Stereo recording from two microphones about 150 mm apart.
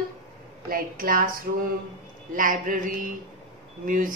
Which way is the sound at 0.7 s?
70° right (ahead or behind).